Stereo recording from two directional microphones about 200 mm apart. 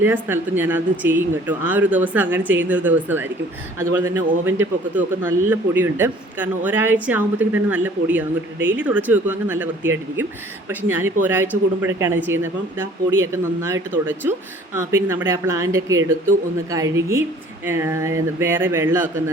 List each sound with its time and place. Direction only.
0.0 s a man's voice: 10° right (ahead or behind)